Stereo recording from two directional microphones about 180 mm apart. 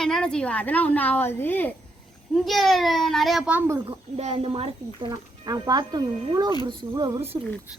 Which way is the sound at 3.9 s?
35° right (ahead or behind).